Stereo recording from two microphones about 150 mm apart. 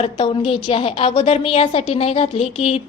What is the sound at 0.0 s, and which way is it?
A woman's voice, 35° left (ahead or behind).